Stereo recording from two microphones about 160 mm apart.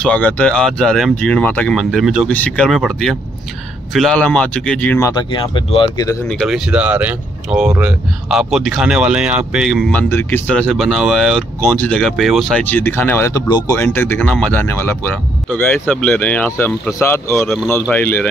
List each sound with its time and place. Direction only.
0.0 s speech: 10° left (ahead or behind)
5.3 s speech: 30° left (ahead or behind)
6.2 s speech: 5° left (ahead or behind)
9.9 s speech: 15° left (ahead or behind)
13.5 s speech: 30° left (ahead or behind)
13.7 s speech: 15° left (ahead or behind)
17.5 s speech: centre (ahead or behind)